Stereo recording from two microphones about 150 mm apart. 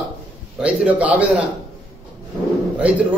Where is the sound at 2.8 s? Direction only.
10° right (ahead or behind).